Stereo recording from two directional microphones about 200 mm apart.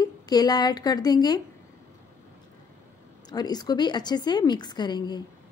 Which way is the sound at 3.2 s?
20° left (ahead or behind).